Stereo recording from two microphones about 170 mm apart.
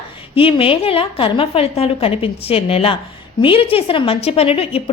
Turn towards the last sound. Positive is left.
turn(degrees=35)  # may be behind; listen again after turning